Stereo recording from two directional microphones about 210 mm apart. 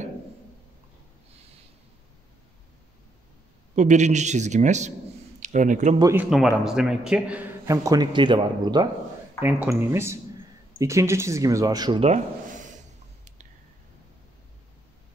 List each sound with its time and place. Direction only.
3.7 s a man's voice: 35° right (ahead or behind)
5.9 s a man's voice: 15° right (ahead or behind)
6.3 s a man's voice: centre (ahead or behind); by 8.8 s 20° right (ahead or behind)
9.4 s a man's voice: 10° right (ahead or behind); by 12.7 s 35° right (ahead or behind)